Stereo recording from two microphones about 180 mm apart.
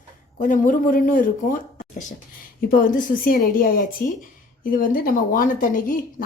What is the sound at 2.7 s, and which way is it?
Speech, 50° left (ahead or behind).